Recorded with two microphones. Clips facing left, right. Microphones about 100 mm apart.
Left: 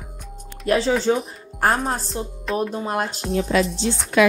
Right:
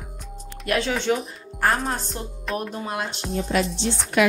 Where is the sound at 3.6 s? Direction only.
Centre (ahead or behind).